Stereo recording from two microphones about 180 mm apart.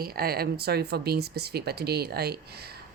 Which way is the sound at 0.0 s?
55° right (ahead or behind).